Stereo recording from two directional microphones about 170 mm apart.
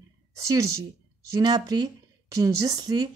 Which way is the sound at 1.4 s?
25° right (ahead or behind).